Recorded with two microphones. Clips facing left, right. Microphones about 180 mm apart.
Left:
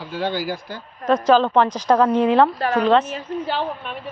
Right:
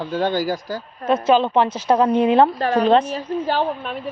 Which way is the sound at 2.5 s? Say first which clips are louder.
Right 1 dB; 35° right (ahead or behind).